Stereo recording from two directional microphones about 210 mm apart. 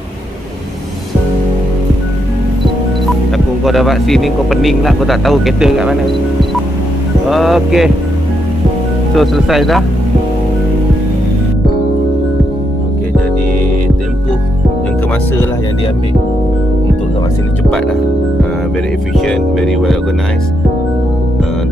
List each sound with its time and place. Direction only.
3.6 s speech: centre (ahead or behind)
7.2 s speech: centre (ahead or behind)
9.1 s speech: centre (ahead or behind)
19.1 s speech: centre (ahead or behind)